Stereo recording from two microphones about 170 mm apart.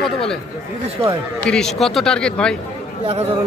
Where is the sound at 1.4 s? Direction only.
5° left (ahead or behind).